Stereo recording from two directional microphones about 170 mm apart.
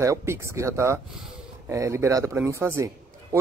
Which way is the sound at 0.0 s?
15° right (ahead or behind).